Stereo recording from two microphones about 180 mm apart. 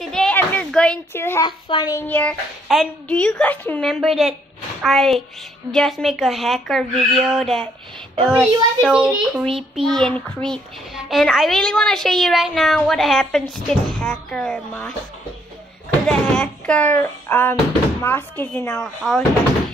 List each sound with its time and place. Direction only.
0.0 s a sound: centre (ahead or behind)
1.7 s speech: 25° left (ahead or behind)
2.0 s a child's voice: 10° left (ahead or behind)
16.1 s speech: 5° left (ahead or behind)